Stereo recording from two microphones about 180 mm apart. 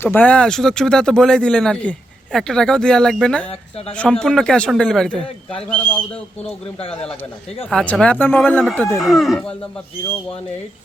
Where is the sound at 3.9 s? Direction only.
5° left (ahead or behind).